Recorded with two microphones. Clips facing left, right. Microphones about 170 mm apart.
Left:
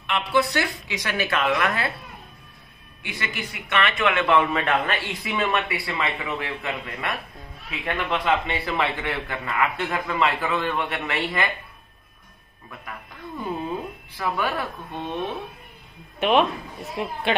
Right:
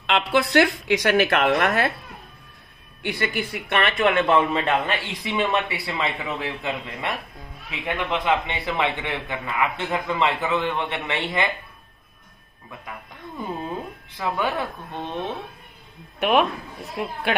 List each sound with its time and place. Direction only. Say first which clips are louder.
0.0 s speech: right 1 dB; 75° right (ahead or behind); by 1.9 s 45° right (ahead or behind)
3.2 s a man's voice: right 5 dB; 35° right (ahead or behind)
14.1 s a man's voice: right 1 dB; 20° right (ahead or behind)
16.2 s speech: even; 5° right (ahead or behind)